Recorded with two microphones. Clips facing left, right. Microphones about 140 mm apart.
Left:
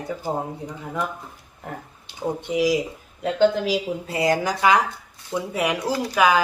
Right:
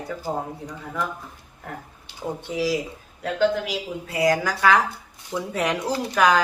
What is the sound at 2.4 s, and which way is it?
Speech, 15° left (ahead or behind).